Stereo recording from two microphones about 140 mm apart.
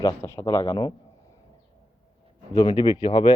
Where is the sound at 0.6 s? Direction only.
35° left (ahead or behind).